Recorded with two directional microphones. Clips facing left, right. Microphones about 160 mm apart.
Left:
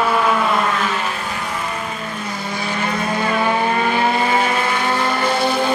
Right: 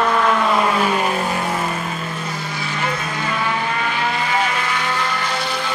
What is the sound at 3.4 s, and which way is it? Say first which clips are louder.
Vehicle: left 5 dB; 40° left (ahead or behind).